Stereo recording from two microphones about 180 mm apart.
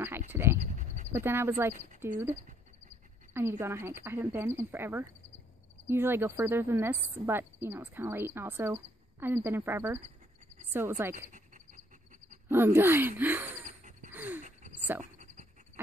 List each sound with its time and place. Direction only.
0.3 s frog: 15° right (ahead or behind)
0.6 s a sound: 45° right (ahead or behind)
1.1 s speech: 15° right (ahead or behind)
3.3 s speech: 15° right (ahead or behind)
11.1 s a sound: 45° right (ahead or behind)
12.4 s speech: 15° right (ahead or behind)
13.7 s dog: 45° right (ahead or behind)
14.1 s dog: 10° right (ahead or behind)
14.4 s a sound: 45° right (ahead or behind)